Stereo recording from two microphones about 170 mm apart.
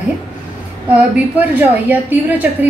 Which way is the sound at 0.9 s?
10° right (ahead or behind).